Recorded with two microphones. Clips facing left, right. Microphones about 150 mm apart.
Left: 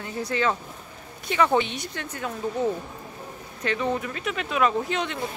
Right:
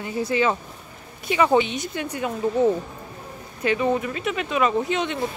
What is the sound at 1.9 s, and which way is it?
Speech, 15° right (ahead or behind).